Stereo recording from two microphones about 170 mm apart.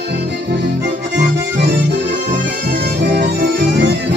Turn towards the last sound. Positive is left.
turn(degrees=-90)